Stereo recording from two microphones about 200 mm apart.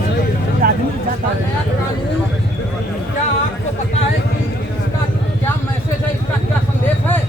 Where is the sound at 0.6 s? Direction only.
50° right (ahead or behind).